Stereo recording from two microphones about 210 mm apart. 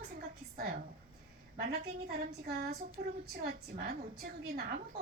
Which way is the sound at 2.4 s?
45° right (ahead or behind).